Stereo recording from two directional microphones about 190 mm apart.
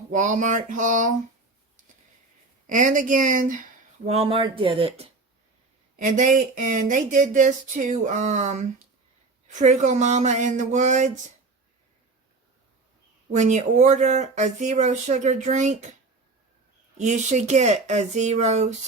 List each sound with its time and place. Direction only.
0.1 s speech: 40° right (ahead or behind)
2.6 s speech: 40° right (ahead or behind)
6.0 s speech: 45° right (ahead or behind)
13.3 s speech: 40° right (ahead or behind)
17.0 s speech: 40° right (ahead or behind)